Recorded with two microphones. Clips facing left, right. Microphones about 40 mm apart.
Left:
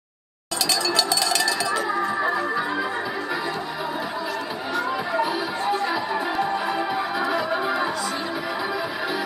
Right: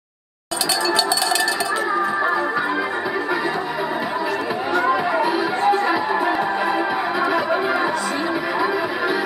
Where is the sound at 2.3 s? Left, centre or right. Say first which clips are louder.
Right 4 dB; right.